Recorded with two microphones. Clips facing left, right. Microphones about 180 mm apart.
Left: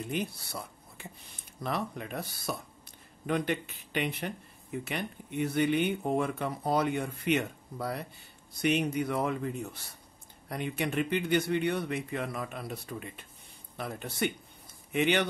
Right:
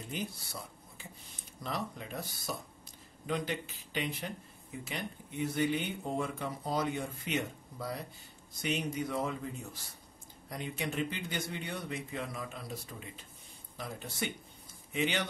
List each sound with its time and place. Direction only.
0.1 s speech: 65° left (ahead or behind)